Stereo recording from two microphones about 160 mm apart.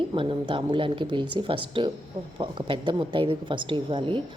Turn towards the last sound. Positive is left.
turn(degrees=-30)  # may be behind; listen again after turning